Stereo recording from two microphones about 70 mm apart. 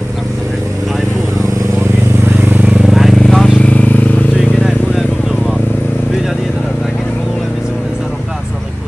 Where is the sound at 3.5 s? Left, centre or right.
Centre.